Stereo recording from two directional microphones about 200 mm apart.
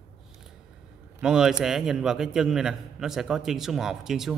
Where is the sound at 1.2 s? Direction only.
5° right (ahead or behind).